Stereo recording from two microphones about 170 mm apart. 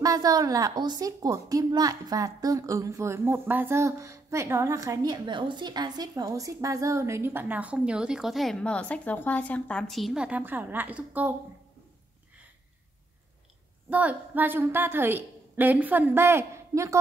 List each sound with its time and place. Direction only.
0.0 s a woman's voice: 20° right (ahead or behind)
13.8 s a woman's voice: 10° right (ahead or behind)